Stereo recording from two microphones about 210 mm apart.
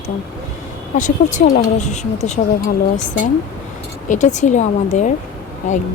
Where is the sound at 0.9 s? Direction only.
35° left (ahead or behind).